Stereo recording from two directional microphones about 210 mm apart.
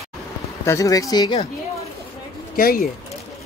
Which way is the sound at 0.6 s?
15° left (ahead or behind).